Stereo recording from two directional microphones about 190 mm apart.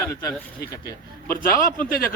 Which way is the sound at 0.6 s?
55° left (ahead or behind).